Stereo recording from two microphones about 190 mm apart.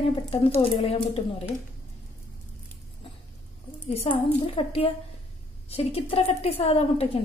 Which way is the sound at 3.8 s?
30° left (ahead or behind).